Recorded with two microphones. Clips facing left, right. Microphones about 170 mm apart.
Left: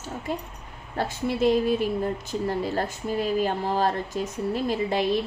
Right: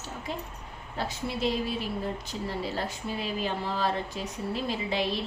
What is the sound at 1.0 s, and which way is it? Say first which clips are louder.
A woman's voice: left 6 dB; 50° left (ahead or behind).